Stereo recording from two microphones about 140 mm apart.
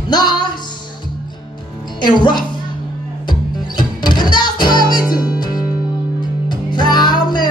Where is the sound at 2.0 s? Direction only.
35° left (ahead or behind).